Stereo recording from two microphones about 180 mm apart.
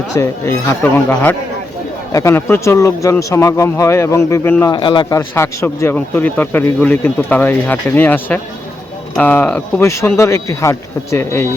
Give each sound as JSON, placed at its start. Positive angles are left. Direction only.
{"t": 0.2, "sound": "speech", "side_deg": 15}
{"t": 4.7, "sound": "speech", "side_deg": 25}